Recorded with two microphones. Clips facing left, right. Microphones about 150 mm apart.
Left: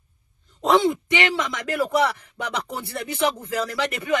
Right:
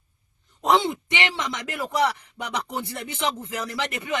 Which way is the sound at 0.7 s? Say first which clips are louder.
Left 3 dB; 25° right (ahead or behind).